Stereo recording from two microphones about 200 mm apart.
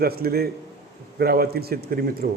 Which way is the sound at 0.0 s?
50° right (ahead or behind).